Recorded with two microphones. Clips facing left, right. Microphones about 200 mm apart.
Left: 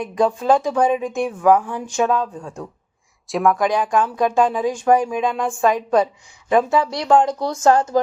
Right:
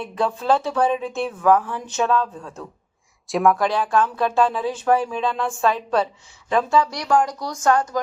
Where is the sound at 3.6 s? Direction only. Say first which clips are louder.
Left 2 dB; 15° left (ahead or behind).